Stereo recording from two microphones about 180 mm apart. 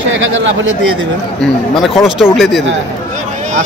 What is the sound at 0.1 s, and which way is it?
Speech, 90° right.